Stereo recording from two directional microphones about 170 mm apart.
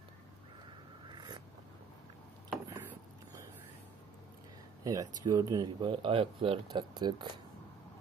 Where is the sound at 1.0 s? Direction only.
25° right (ahead or behind).